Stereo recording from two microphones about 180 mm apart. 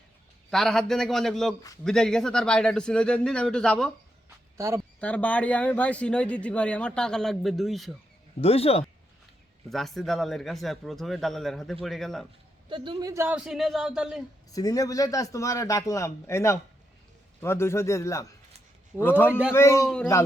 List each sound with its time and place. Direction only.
0.5 s speech: centre (ahead or behind)
4.5 s speech: 15° right (ahead or behind)
4.9 s speech: 5° left (ahead or behind)
8.4 s speech: 35° left (ahead or behind)
9.6 s speech: centre (ahead or behind)
12.6 s speech: 30° right (ahead or behind)
13.2 s speech: 5° right (ahead or behind)
14.5 s speech: 20° left (ahead or behind)
19.3 s a man's voice: 5° right (ahead or behind)
19.5 s speech: 15° left (ahead or behind)